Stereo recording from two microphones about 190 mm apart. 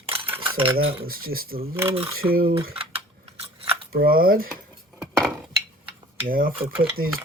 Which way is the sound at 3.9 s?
50° right (ahead or behind).